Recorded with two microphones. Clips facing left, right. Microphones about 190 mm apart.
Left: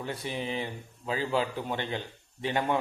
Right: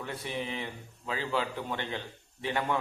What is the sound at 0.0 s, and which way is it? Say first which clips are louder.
Speech: left 2 dB; 30° left (ahead or behind).